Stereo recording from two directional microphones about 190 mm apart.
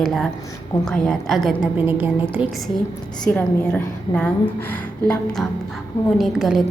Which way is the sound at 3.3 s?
5° left (ahead or behind).